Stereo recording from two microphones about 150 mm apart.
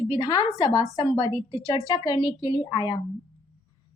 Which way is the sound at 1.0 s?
30° left (ahead or behind).